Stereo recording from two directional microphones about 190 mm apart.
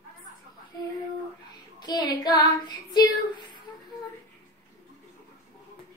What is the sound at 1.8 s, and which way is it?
Female singing, 20° left (ahead or behind).